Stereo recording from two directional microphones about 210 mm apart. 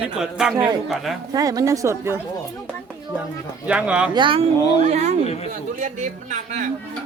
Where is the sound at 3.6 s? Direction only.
5° right (ahead or behind).